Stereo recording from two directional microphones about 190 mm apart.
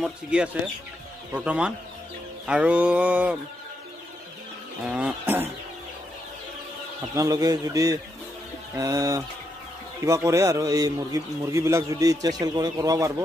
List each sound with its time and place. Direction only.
0.0 s speech: 5° right (ahead or behind)
1.3 s mantra: 5° right (ahead or behind)
4.8 s mantra: 5° right (ahead or behind)
7.2 s mantra: 20° right (ahead or behind)
10.0 s a man's voice: 15° right (ahead or behind)